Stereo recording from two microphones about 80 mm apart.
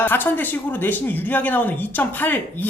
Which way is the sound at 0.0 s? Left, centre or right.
Left.